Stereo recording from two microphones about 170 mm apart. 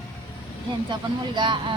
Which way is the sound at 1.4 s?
30° right (ahead or behind).